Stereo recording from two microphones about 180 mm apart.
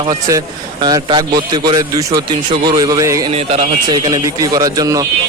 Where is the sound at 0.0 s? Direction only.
20° right (ahead or behind).